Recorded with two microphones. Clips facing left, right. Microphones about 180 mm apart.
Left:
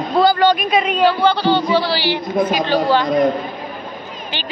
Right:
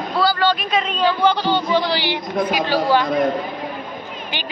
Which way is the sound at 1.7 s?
20° right (ahead or behind).